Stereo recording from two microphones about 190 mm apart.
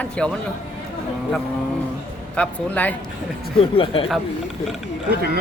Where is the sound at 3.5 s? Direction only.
30° left (ahead or behind).